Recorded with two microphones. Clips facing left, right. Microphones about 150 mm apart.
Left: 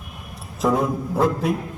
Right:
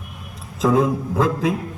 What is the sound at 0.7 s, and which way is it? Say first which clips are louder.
Speech: right 6 dB; 90° right.